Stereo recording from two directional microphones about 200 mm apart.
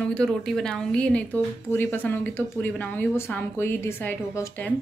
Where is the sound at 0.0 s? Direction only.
5° left (ahead or behind).